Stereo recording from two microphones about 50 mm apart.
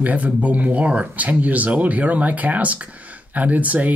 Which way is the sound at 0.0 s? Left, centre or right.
Right.